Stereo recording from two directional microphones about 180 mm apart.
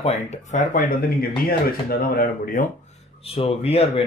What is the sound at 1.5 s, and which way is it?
Speech, 55° left (ahead or behind).